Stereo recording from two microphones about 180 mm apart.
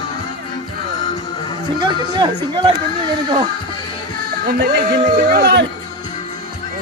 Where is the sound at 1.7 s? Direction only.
25° right (ahead or behind).